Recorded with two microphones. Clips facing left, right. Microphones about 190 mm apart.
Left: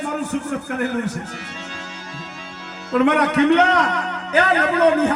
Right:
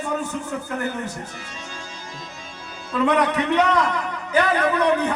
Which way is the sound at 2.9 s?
70° left (ahead or behind).